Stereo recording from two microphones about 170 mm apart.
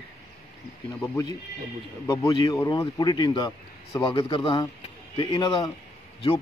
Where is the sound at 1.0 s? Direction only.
15° left (ahead or behind).